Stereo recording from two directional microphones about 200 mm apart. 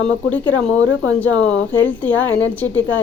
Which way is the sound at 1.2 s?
5° left (ahead or behind).